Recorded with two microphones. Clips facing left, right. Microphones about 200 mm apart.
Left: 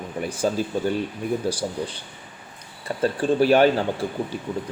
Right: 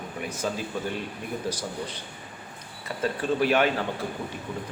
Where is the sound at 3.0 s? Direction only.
30° left (ahead or behind).